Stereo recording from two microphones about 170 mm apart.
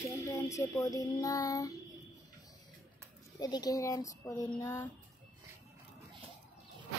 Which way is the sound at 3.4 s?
20° left (ahead or behind).